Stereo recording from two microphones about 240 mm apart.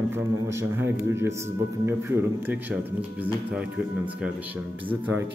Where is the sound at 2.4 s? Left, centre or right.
Centre.